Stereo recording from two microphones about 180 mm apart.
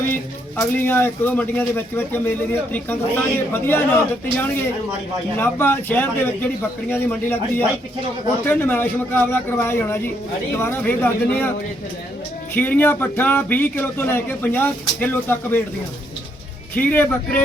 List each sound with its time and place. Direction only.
0.1 s speech: 10° left (ahead or behind)
5.4 s speech: 10° left (ahead or behind)
12.5 s speech: 10° left (ahead or behind)
16.7 s speech: 10° left (ahead or behind)